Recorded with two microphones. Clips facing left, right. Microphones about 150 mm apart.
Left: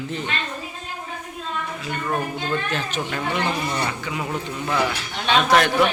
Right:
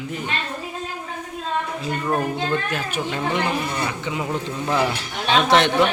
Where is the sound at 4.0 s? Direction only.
20° right (ahead or behind).